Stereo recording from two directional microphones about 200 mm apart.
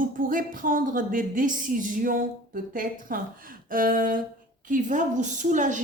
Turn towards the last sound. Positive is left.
turn(degrees=-40)  # may be behind; listen again after turning